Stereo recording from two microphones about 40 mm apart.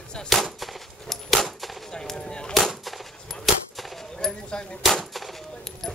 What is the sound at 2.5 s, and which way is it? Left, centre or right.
Gunshot, centre.